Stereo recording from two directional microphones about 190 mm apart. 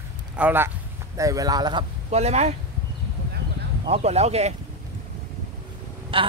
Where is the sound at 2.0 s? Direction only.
35° right (ahead or behind).